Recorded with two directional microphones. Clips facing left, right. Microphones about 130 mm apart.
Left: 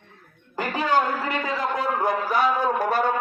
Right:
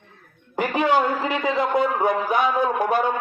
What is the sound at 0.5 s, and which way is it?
A man's voice, 20° right (ahead or behind).